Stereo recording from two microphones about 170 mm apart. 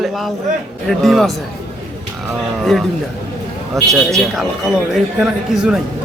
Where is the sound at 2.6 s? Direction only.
Centre (ahead or behind).